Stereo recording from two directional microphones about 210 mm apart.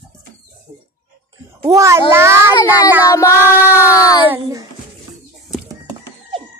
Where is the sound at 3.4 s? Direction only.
10° right (ahead or behind).